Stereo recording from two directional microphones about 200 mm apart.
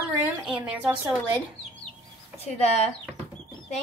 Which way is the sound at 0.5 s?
20° right (ahead or behind).